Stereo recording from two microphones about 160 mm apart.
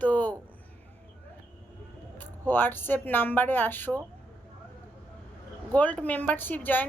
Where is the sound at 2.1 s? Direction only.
10° left (ahead or behind).